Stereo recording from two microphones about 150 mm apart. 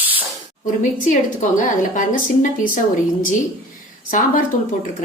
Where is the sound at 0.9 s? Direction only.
60° left (ahead or behind).